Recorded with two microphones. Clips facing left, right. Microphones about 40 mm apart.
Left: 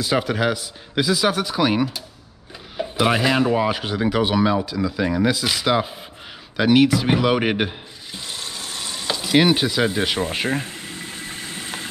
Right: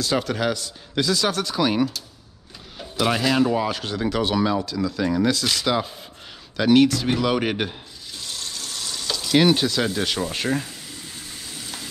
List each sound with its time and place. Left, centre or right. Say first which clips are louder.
0.0 s speech: left 2 dB; centre
6.5 s a sound: left 1 dB; centre
10.3 s speech: left 1 dB; left
10.6 s boiling: left 4 dB; left